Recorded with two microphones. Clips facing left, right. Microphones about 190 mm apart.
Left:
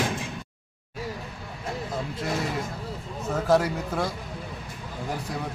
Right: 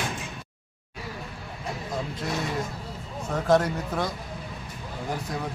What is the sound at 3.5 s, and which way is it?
Speech, 5° left (ahead or behind).